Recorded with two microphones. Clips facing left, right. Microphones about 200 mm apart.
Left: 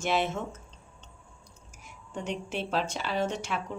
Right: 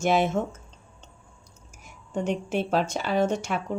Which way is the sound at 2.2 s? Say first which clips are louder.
Right 7 dB; 45° right (ahead or behind).